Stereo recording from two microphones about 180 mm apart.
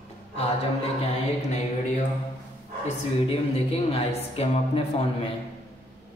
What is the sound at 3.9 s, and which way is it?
Speech, 30° left (ahead or behind).